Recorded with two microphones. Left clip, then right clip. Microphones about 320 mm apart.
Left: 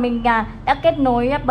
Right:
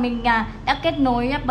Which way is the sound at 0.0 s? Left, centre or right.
Centre.